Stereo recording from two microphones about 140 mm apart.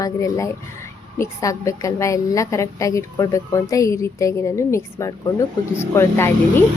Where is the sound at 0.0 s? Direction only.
20° left (ahead or behind).